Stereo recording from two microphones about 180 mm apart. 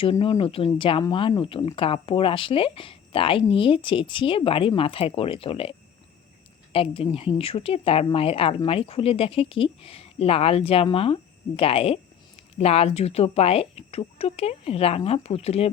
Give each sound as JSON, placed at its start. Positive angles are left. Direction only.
{"t": 0.0, "sound": "a woman's voice", "side_deg": 30}
{"t": 6.7, "sound": "a woman's voice", "side_deg": 30}